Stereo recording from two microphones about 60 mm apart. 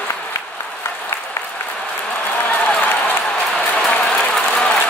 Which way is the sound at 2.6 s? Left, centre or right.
Centre.